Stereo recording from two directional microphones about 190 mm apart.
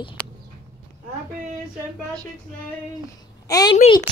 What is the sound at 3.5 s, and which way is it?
Speech, 20° left (ahead or behind).